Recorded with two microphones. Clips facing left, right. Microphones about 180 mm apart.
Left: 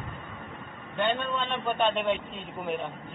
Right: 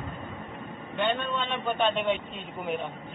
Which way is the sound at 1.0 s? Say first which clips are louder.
Even; centre (ahead or behind).